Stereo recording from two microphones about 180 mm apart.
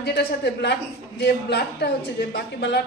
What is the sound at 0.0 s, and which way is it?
A woman's voice, 65° left (ahead or behind).